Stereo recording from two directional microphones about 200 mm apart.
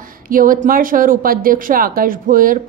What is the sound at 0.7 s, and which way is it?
A woman's voice, 45° right (ahead or behind).